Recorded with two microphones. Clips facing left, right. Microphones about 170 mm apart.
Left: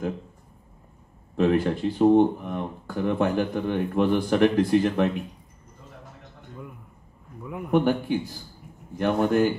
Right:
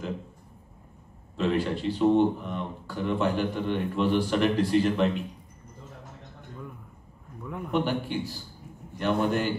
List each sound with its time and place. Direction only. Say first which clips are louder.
1.3 s speech: left 5 dB; 55° left (ahead or behind)
7.4 s a man's voice: left 2 dB; 5° left (ahead or behind)
7.7 s speech: left 6 dB; 50° left (ahead or behind)